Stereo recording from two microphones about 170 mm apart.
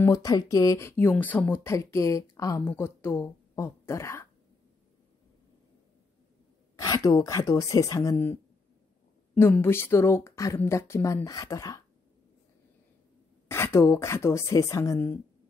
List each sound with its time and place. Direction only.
0.0 s speech: 20° left (ahead or behind)
6.8 s speech: 20° left (ahead or behind)
13.5 s speech: 15° left (ahead or behind)